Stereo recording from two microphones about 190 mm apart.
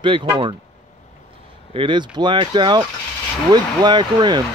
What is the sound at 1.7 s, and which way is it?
Speech, 25° right (ahead or behind).